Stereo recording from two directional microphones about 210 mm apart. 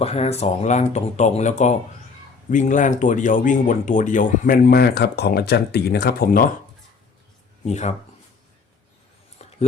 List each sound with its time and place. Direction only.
0.0 s speech: 30° left (ahead or behind); by 6.5 s 45° left (ahead or behind)
7.6 s speech: 30° left (ahead or behind)
9.4 s a sound: 30° left (ahead or behind)